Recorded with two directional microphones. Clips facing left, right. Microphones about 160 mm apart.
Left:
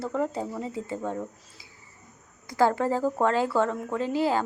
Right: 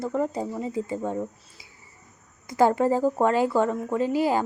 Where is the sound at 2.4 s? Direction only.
20° right (ahead or behind).